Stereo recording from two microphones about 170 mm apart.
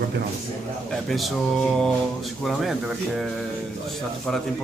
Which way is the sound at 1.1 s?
Centre (ahead or behind).